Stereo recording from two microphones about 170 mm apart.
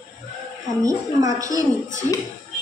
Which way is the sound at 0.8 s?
20° right (ahead or behind).